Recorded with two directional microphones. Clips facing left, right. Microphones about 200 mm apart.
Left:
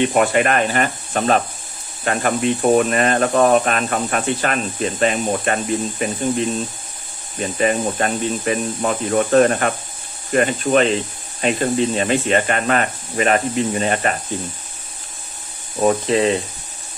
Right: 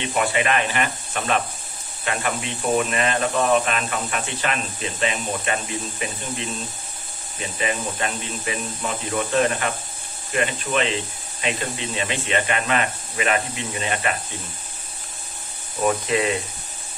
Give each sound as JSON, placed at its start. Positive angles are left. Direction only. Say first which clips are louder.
{"t": 0.0, "sound": "speech", "louder": "left 7 dB", "side_deg": 55}
{"t": 7.5, "sound": "speech", "louder": "left 8 dB", "side_deg": 45}
{"t": 15.8, "sound": "speech", "louder": "left 5 dB", "side_deg": 30}